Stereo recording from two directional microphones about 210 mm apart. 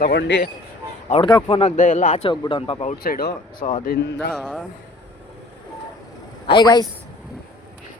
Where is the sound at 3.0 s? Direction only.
45° left (ahead or behind).